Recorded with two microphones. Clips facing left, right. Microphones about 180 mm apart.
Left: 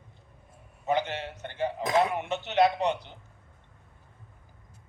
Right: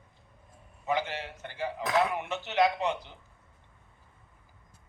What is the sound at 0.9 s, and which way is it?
A man's voice, 20° left (ahead or behind).